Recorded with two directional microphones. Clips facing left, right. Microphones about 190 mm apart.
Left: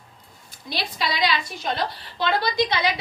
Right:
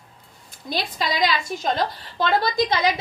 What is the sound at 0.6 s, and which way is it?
A woman's voice, 45° right (ahead or behind).